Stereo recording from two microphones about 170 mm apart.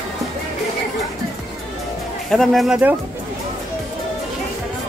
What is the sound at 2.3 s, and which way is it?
Speech, centre (ahead or behind).